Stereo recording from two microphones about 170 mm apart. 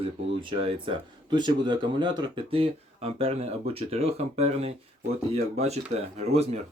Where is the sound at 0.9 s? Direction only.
25° right (ahead or behind).